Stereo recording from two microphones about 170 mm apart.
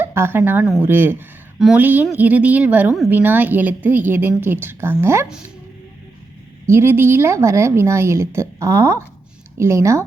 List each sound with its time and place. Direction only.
0.0 s a woman's voice: 15° right (ahead or behind)
6.7 s a woman's voice: 15° right (ahead or behind)